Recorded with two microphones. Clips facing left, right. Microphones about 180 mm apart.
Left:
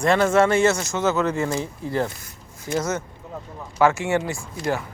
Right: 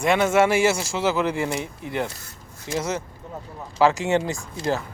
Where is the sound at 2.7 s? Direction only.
30° right (ahead or behind).